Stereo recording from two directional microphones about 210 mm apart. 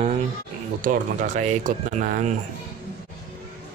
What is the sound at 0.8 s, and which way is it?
Speech, 35° right (ahead or behind).